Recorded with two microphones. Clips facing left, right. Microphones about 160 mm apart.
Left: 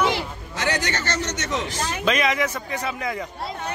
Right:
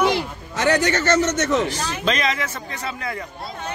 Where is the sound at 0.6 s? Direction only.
45° right (ahead or behind).